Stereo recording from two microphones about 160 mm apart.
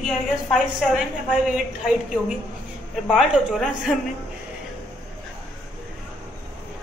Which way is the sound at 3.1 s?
Centre (ahead or behind).